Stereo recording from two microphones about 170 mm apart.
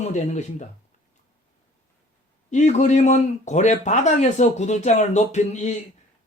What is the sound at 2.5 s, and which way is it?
Speech, 45° left (ahead or behind).